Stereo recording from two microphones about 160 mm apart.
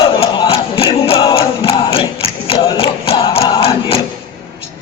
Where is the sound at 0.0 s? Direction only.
35° left (ahead or behind).